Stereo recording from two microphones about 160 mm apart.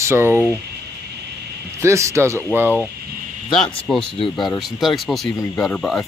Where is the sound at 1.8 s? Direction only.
20° right (ahead or behind).